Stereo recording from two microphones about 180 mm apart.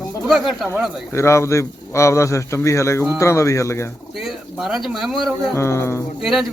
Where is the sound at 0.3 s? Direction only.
Centre (ahead or behind).